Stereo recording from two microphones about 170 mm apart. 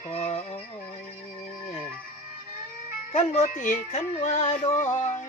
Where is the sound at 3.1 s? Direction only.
45° left (ahead or behind).